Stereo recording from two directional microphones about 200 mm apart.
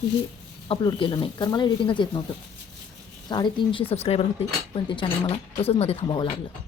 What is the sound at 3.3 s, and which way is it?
Speech, 25° left (ahead or behind).